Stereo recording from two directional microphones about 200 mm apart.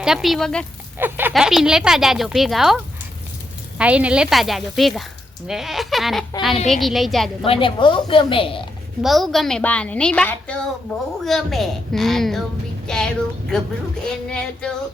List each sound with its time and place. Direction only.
0.0 s a woman's voice: centre (ahead or behind)
0.9 s a woman's voice: 10° right (ahead or behind)
3.8 s a woman's voice: 5° right (ahead or behind)
7.4 s a woman's voice: 25° left (ahead or behind)
9.0 s a woman's voice: centre (ahead or behind)